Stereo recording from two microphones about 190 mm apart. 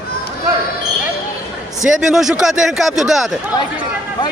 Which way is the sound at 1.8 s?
Centre (ahead or behind).